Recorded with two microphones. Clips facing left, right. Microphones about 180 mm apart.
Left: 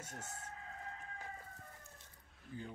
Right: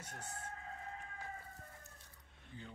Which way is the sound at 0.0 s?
45° left (ahead or behind).